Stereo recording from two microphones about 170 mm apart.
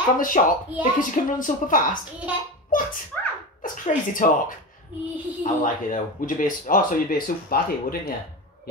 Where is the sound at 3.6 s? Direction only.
50° left (ahead or behind).